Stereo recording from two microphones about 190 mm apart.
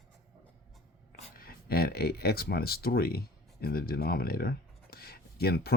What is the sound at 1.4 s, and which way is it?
Speech, 50° left (ahead or behind).